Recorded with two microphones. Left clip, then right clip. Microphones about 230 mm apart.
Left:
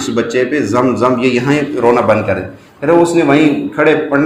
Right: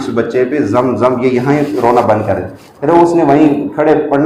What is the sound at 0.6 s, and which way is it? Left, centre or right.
A man's voice, left.